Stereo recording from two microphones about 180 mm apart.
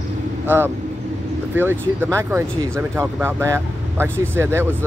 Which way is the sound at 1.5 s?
10° right (ahead or behind).